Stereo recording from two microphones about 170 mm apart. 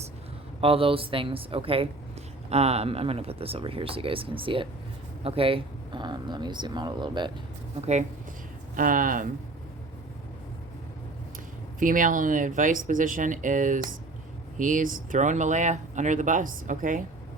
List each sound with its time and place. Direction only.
0.6 s speech: 30° right (ahead or behind)
7.8 s speech: 40° right (ahead or behind)
8.7 s speech: 55° right (ahead or behind)
11.8 s speech: 50° right (ahead or behind)